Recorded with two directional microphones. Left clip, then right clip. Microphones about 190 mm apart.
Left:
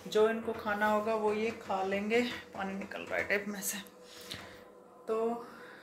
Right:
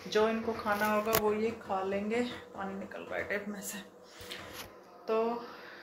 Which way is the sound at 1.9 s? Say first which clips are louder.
Left 2 dB; 25° left (ahead or behind).